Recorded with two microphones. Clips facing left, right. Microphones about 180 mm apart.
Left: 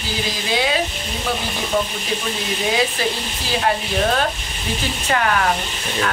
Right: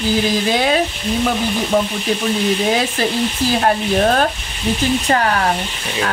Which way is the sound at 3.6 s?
45° right (ahead or behind).